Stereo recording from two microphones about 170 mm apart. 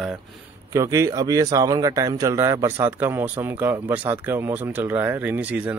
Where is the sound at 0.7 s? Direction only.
20° right (ahead or behind).